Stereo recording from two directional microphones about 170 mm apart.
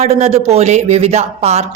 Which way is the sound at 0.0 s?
40° right (ahead or behind).